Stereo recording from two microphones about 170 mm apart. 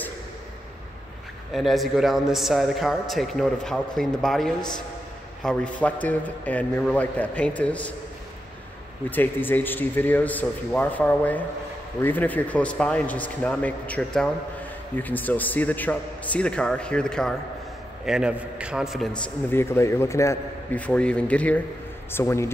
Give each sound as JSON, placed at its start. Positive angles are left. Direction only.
{"t": 1.5, "sound": "a man's voice", "side_deg": 0}
{"t": 9.1, "sound": "a man's voice", "side_deg": 10}
{"t": 19.5, "sound": "a man's voice", "side_deg": 15}